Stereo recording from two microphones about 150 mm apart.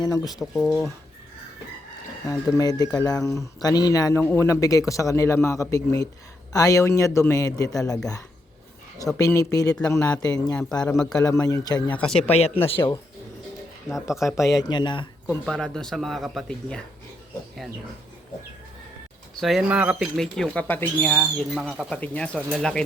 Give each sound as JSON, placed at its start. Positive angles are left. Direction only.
{"t": 0.0, "sound": "a man's voice", "side_deg": 25}
{"t": 0.3, "sound": "speech", "side_deg": 5}
{"t": 2.2, "sound": "a man's voice", "side_deg": 25}
{"t": 10.8, "sound": "speech", "side_deg": 10}
{"t": 11.2, "sound": "a man's voice", "side_deg": 20}
{"t": 12.2, "sound": "speech", "side_deg": 45}
{"t": 13.9, "sound": "speech", "side_deg": 0}
{"t": 14.5, "sound": "speech", "side_deg": 30}
{"t": 15.4, "sound": "speech", "side_deg": 5}
{"t": 19.4, "sound": "speech", "side_deg": 0}
{"t": 20.1, "sound": "speech", "side_deg": 5}